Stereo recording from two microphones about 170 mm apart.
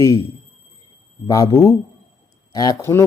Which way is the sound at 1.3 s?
20° left (ahead or behind).